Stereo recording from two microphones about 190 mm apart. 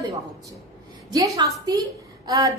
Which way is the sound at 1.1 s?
20° right (ahead or behind).